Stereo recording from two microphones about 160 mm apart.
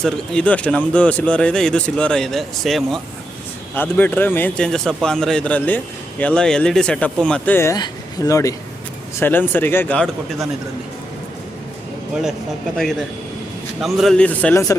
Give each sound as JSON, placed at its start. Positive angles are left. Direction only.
{"t": 0.0, "sound": "speech", "side_deg": 5}
{"t": 3.8, "sound": "a man's voice", "side_deg": 10}
{"t": 12.7, "sound": "speech", "side_deg": 0}